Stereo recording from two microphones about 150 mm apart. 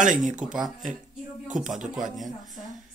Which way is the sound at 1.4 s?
5° right (ahead or behind).